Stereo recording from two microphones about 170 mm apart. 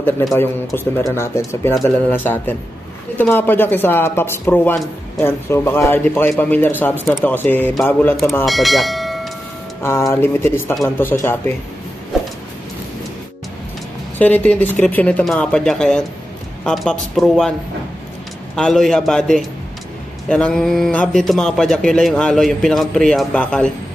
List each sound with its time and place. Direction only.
0.7 s speech: 15° left (ahead or behind)
9.8 s speech: 15° left (ahead or behind)
14.1 s speech: 10° left (ahead or behind)
18.6 s speech: centre (ahead or behind)